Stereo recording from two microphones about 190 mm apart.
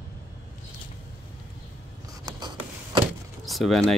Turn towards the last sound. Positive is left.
turn(degrees=0)  # may be behind; listen again after turning